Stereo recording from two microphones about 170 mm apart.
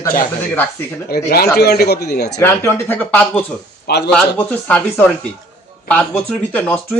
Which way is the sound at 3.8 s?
75° left (ahead or behind).